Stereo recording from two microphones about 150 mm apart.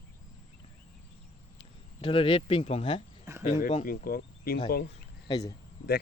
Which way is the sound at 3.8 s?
70° left (ahead or behind).